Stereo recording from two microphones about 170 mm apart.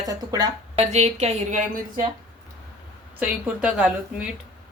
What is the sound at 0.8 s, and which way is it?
A woman's voice, 40° right (ahead or behind).